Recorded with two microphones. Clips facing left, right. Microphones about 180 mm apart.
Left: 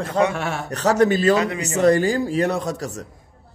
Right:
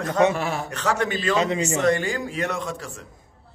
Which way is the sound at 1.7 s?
35° left (ahead or behind).